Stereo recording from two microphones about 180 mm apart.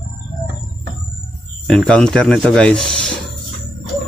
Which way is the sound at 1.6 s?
5° left (ahead or behind).